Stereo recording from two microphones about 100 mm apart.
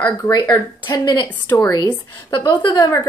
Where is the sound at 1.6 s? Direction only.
40° left (ahead or behind).